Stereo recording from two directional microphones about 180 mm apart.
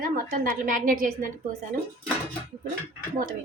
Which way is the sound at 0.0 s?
55° right (ahead or behind).